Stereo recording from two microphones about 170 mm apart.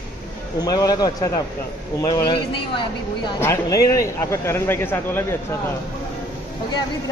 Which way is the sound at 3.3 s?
15° left (ahead or behind).